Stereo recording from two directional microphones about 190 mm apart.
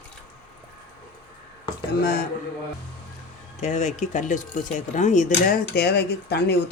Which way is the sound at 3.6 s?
40° left (ahead or behind).